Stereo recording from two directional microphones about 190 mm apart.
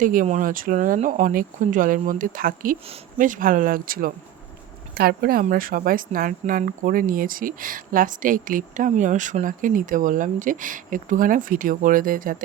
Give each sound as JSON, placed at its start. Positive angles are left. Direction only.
{"t": 0.0, "sound": "speech", "side_deg": -45}